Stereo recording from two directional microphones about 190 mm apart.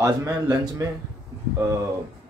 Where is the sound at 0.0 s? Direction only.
15° right (ahead or behind).